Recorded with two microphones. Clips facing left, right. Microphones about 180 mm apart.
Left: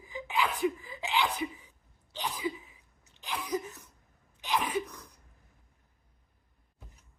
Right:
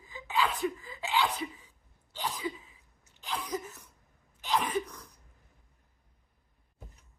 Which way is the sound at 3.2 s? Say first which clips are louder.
Left 2 dB; 15° left (ahead or behind).